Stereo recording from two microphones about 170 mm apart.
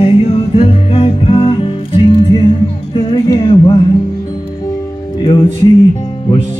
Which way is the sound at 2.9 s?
30° left (ahead or behind).